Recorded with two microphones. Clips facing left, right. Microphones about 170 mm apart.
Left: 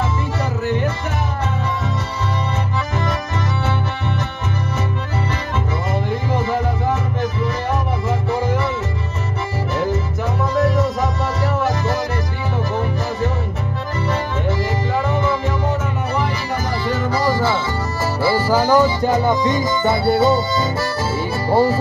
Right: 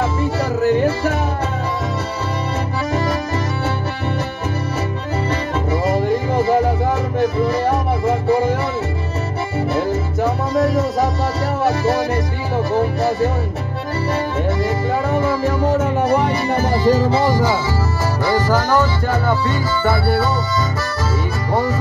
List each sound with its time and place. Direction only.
16.7 s music: 40° right (ahead or behind); by 17.6 s 15° right (ahead or behind)
18.2 s music: 10° left (ahead or behind)
21.5 s music: 30° left (ahead or behind)